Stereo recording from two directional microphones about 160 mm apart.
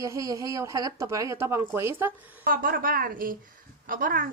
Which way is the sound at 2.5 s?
65° right (ahead or behind).